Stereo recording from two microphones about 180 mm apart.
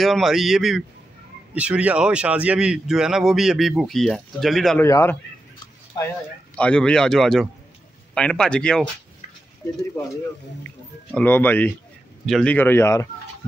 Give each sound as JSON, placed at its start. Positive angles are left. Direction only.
{"t": 0.0, "sound": "a man's voice", "side_deg": 0}
{"t": 4.7, "sound": "a man's voice", "side_deg": 15}
{"t": 6.5, "sound": "a man's voice", "side_deg": 5}
{"t": 11.1, "sound": "a man's voice", "side_deg": 10}